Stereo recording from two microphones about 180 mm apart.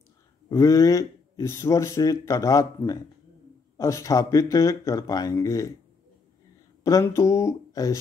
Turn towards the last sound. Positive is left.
turn(degrees=15)  # may be behind; listen again after turning